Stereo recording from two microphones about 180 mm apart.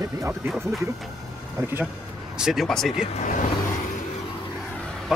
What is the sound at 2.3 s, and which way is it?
Speech, centre (ahead or behind).